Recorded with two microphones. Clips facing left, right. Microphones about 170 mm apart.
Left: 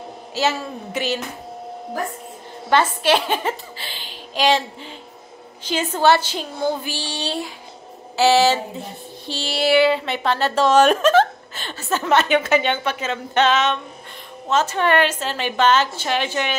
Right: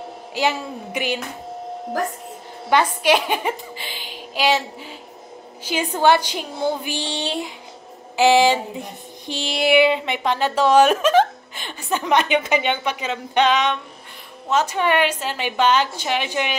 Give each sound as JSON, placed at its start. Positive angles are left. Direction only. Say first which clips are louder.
{"t": 0.3, "sound": "speech", "louder": "even", "side_deg": -15}
{"t": 2.7, "sound": "a woman's voice", "louder": "even", "side_deg": -10}
{"t": 5.7, "sound": "speech", "louder": "even", "side_deg": -15}